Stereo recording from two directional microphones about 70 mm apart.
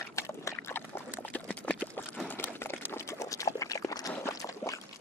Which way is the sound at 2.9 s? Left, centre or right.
Left.